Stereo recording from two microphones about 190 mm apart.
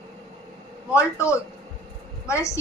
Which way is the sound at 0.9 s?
15° left (ahead or behind).